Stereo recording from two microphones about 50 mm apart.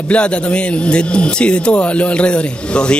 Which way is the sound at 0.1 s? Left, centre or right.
Left.